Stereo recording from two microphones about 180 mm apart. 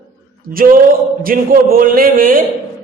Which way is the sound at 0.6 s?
50° right (ahead or behind).